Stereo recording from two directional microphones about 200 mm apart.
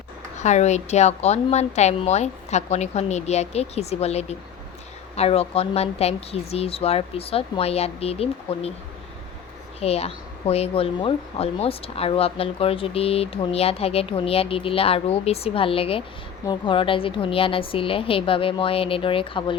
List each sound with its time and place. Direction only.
0.3 s a woman's voice: 35° left (ahead or behind)
9.8 s a woman's voice: 30° left (ahead or behind)